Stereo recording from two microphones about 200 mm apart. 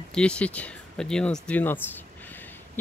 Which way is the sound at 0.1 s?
5° left (ahead or behind).